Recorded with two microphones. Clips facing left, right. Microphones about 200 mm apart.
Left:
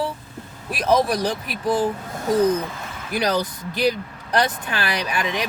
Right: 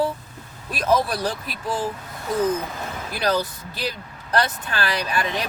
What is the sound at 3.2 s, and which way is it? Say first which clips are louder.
Speech: left 1 dB; 15° left (ahead or behind).